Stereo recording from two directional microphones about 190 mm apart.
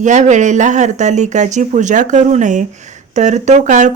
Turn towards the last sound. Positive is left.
turn(degrees=-40)  # may be behind; listen again after turning